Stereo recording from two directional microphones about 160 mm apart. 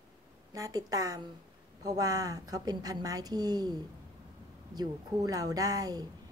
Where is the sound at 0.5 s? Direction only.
25° right (ahead or behind).